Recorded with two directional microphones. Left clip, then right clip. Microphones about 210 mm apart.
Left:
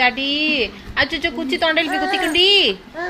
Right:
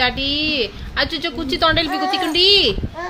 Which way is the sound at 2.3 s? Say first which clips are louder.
Even; 90° right.